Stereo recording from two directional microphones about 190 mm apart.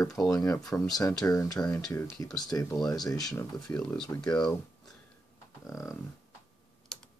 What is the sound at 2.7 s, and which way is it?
Speech, centre (ahead or behind).